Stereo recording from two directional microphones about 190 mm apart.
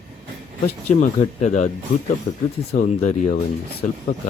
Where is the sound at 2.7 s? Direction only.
40° left (ahead or behind).